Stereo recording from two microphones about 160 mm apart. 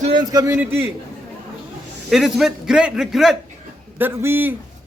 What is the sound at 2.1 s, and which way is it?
A man's voice, centre (ahead or behind).